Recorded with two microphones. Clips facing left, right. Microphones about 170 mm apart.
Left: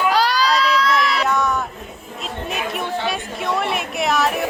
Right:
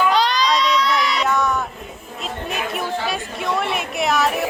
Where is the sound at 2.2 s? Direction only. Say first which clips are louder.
Even; centre (ahead or behind).